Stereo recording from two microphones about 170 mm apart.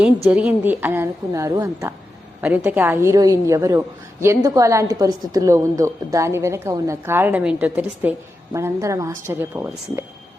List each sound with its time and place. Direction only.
0.3 s a woman's voice: 10° right (ahead or behind)